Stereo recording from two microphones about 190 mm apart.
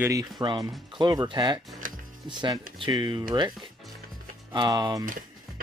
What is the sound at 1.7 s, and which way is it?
Music, 45° right (ahead or behind).